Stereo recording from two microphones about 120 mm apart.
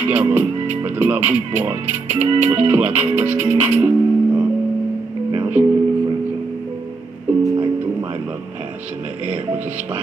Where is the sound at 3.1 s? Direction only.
15° right (ahead or behind).